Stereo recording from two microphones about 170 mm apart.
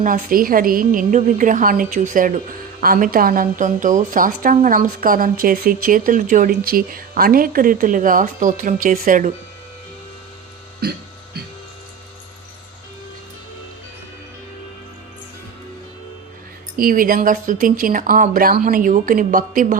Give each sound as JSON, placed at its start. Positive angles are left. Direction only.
{"t": 0.0, "sound": "speech", "side_deg": -55}
{"t": 10.8, "sound": "music", "side_deg": -65}
{"t": 16.7, "sound": "speech", "side_deg": -55}